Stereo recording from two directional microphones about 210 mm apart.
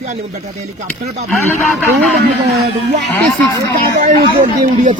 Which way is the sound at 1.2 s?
10° left (ahead or behind).